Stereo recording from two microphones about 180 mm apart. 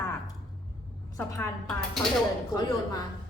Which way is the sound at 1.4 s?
Centre (ahead or behind).